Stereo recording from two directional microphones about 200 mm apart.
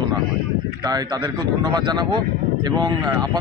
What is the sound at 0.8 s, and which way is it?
A man's voice, 20° right (ahead or behind).